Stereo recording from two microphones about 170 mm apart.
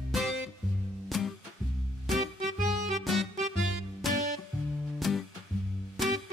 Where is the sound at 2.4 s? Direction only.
50° right (ahead or behind).